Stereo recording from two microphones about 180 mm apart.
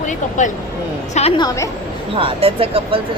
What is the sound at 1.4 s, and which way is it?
Speech, 20° left (ahead or behind).